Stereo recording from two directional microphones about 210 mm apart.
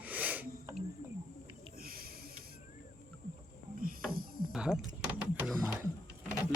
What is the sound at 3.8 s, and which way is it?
Wild animals, 45° right (ahead or behind).